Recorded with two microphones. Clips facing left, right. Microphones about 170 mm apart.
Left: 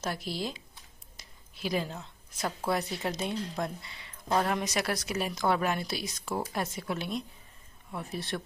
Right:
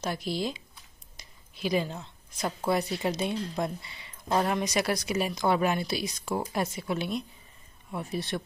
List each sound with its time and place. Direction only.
0.0 s speech: centre (ahead or behind)
1.1 s a sound: centre (ahead or behind)
3.1 s speech: 5° right (ahead or behind)